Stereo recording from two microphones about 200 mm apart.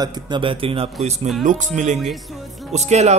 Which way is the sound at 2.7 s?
35° right (ahead or behind).